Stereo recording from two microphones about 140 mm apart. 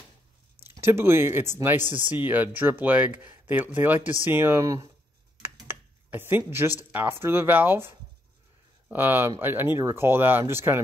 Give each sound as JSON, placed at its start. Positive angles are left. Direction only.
{"t": 0.7, "sound": "speech", "side_deg": -15}
{"t": 5.4, "sound": "a sound", "side_deg": -15}
{"t": 6.8, "sound": "speech", "side_deg": -15}